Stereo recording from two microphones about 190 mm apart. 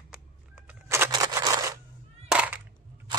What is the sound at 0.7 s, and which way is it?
Bird, 10° right (ahead or behind).